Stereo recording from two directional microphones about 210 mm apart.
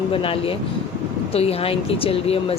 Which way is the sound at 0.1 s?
25° left (ahead or behind).